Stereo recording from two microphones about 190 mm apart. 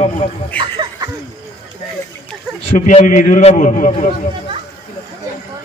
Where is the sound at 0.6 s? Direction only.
25° right (ahead or behind).